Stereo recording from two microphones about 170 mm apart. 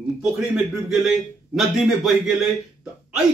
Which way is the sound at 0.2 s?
5° right (ahead or behind).